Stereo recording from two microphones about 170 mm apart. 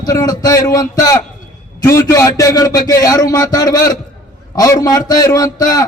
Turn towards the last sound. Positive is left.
turn(degrees=20)  # may be behind; listen again after turning